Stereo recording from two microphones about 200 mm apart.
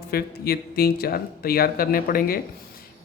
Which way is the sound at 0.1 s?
50° left (ahead or behind).